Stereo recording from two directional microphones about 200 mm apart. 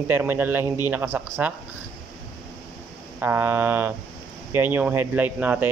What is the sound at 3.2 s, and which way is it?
Speech, 10° right (ahead or behind).